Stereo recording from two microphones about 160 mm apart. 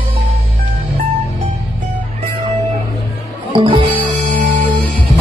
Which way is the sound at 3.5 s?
30° right (ahead or behind).